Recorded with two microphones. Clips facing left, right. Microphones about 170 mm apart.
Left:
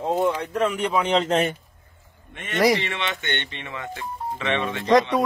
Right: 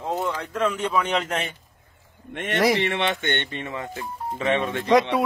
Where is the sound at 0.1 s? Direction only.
15° left (ahead or behind).